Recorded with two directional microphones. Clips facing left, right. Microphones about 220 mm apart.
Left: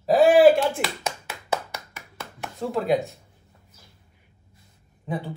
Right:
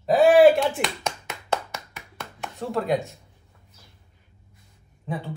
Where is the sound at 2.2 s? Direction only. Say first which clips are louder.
Left 2 dB; centre (ahead or behind).